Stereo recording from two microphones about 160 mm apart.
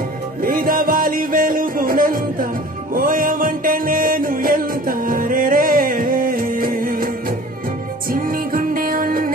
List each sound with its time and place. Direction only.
0.4 s music: 65° right (ahead or behind)